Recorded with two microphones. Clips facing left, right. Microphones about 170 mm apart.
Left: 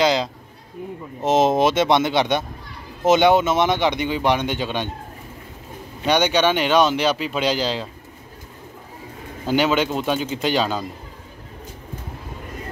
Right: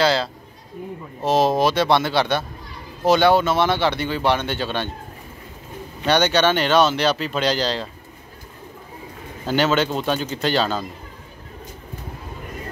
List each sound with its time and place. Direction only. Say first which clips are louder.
0.0 s a man's voice: even; 15° left (ahead or behind)
6.0 s speech: even; 10° left (ahead or behind)
9.5 s speech: even; 10° left (ahead or behind)